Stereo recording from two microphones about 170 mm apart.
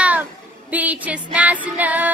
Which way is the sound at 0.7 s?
10° right (ahead or behind).